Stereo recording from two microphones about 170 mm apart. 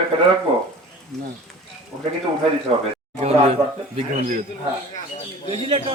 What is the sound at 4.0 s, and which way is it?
Speech, 40° right (ahead or behind).